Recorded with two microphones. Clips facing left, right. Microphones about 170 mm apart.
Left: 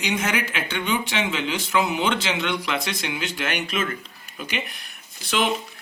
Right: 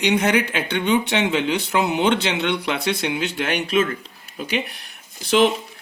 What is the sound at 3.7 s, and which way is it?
Speech, 35° right (ahead or behind).